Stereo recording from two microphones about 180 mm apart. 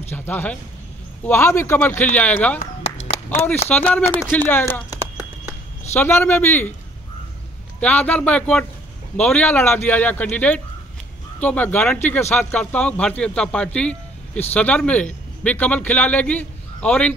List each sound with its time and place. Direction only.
0.1 s speech: 10° left (ahead or behind)
3.1 s a sound: 35° left (ahead or behind)
3.6 s speech: 10° left (ahead or behind)
5.9 s speech: 10° left (ahead or behind)
7.8 s speech: 10° left (ahead or behind)
13.7 s a sound: 5° left (ahead or behind)
14.5 s a man's voice: 5° left (ahead or behind)